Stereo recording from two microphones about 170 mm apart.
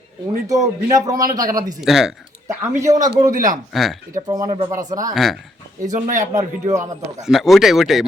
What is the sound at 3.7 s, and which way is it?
Speech, centre (ahead or behind).